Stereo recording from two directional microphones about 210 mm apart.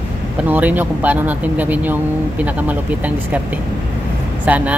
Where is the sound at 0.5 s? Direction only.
10° right (ahead or behind).